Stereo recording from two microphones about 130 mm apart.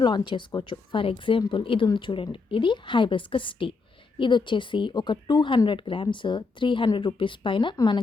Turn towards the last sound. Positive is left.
turn(degrees=35)  # may be behind; listen again after turning